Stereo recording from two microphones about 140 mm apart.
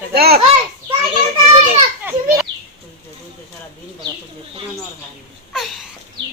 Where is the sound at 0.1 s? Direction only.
90° right.